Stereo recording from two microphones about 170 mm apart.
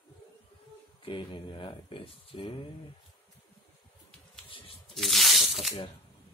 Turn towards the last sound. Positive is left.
turn(degrees=0)  # may be behind; listen again after turning